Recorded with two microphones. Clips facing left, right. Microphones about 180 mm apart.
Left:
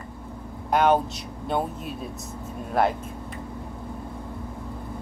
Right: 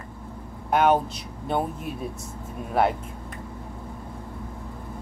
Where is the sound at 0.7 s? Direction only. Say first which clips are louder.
Even; 5° right (ahead or behind).